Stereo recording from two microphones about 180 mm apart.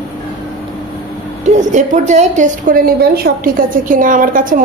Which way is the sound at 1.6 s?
40° right (ahead or behind).